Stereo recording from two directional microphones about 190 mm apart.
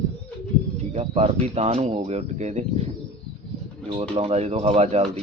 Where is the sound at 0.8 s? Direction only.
35° right (ahead or behind).